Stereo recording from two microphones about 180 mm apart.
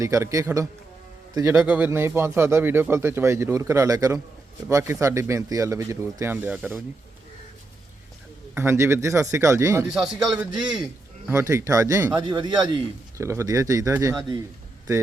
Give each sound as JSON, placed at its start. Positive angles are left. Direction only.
{"t": 0.0, "sound": "a man's voice", "side_deg": -15}
{"t": 1.5, "sound": "speech", "side_deg": -5}
{"t": 6.6, "sound": "speech", "side_deg": 0}
{"t": 8.5, "sound": "speech", "side_deg": -15}
{"t": 9.9, "sound": "speech", "side_deg": -5}
{"t": 11.3, "sound": "speech", "side_deg": -15}